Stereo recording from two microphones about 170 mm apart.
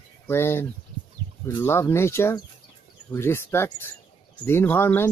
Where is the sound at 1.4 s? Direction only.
15° left (ahead or behind).